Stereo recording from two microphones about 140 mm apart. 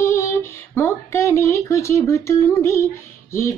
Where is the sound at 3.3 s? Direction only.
20° left (ahead or behind).